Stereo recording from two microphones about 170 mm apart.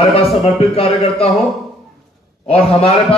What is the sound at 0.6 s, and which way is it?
Speech, 35° left (ahead or behind).